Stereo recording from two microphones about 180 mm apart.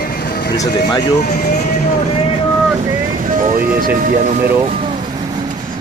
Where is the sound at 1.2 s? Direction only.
55° left (ahead or behind).